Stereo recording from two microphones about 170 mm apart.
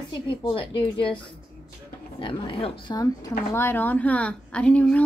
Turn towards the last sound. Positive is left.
turn(degrees=5)  # may be behind; listen again after turning